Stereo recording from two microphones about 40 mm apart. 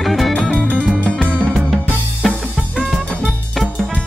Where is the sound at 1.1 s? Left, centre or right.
Left.